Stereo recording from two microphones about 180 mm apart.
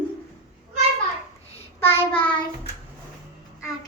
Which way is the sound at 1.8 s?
30° left (ahead or behind).